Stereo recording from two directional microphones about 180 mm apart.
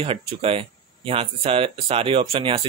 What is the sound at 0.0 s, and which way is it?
Speech, 30° right (ahead or behind).